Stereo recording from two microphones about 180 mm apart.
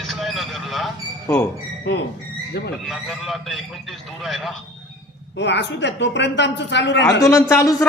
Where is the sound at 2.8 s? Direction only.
Centre (ahead or behind).